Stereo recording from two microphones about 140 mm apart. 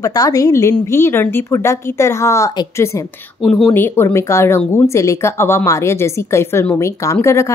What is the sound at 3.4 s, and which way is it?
Speech, 5° left (ahead or behind).